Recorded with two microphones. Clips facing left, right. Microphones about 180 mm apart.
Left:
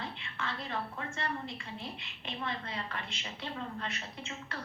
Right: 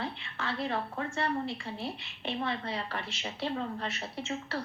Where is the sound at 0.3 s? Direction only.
35° right (ahead or behind).